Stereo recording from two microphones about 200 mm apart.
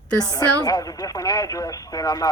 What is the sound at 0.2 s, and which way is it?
Speech, 20° left (ahead or behind).